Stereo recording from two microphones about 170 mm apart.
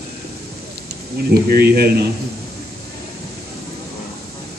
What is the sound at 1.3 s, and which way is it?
Speech, 65° right (ahead or behind).